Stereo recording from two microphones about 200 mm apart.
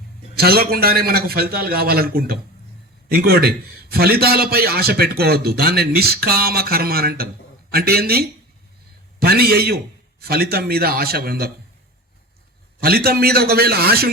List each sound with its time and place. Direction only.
0.3 s a man's voice: 50° right (ahead or behind)
12.8 s a man's voice: 50° right (ahead or behind)